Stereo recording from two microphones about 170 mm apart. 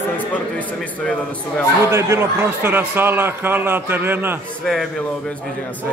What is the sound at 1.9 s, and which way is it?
A man's voice, 15° right (ahead or behind).